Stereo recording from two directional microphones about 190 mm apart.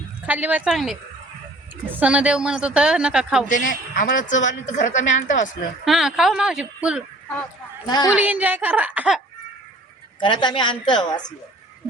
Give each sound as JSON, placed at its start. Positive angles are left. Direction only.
{"t": 0.3, "sound": "speech", "side_deg": -10}
{"t": 3.5, "sound": "a woman's voice", "side_deg": 45}
{"t": 5.8, "sound": "speech", "side_deg": 0}
{"t": 7.9, "sound": "a woman's voice", "side_deg": 20}
{"t": 8.1, "sound": "a woman's voice", "side_deg": -10}
{"t": 10.2, "sound": "a woman's voice", "side_deg": 25}